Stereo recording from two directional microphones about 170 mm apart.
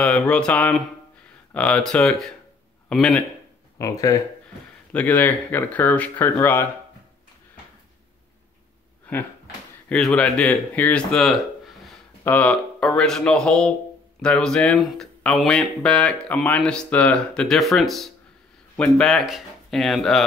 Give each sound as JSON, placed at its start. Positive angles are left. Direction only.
{"t": 0.0, "sound": "speech", "side_deg": 5}
{"t": 3.7, "sound": "speech", "side_deg": 20}
{"t": 4.9, "sound": "speech", "side_deg": 10}
{"t": 9.1, "sound": "speech", "side_deg": 10}